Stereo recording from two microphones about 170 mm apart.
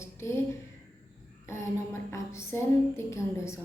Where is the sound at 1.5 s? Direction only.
15° left (ahead or behind).